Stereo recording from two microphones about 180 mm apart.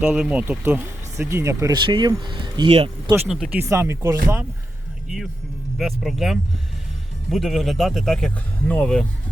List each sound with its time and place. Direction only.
0.0 s speech: 5° right (ahead or behind); by 2.9 s 30° right (ahead or behind)
3.1 s speech: 10° right (ahead or behind)
5.0 s speech: 5° right (ahead or behind)